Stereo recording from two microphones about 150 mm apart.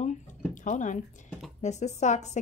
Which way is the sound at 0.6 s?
55° left (ahead or behind).